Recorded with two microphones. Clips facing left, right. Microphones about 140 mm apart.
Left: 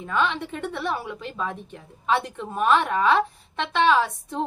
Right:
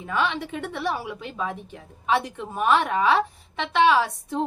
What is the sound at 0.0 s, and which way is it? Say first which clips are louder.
A woman's voice: left 1 dB; 15° right (ahead or behind).